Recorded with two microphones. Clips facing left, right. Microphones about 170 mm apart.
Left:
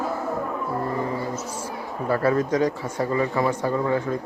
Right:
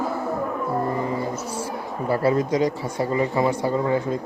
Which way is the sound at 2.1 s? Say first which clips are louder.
Right 1 dB; 30° right (ahead or behind).